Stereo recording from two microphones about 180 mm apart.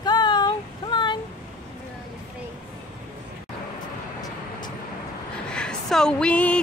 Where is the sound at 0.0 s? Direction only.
25° left (ahead or behind).